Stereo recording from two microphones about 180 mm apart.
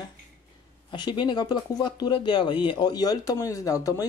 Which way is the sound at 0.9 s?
25° left (ahead or behind).